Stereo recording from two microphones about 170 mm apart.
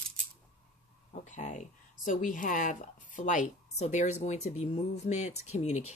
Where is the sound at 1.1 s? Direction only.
45° left (ahead or behind).